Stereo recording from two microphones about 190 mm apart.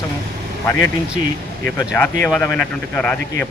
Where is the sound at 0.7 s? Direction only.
15° left (ahead or behind).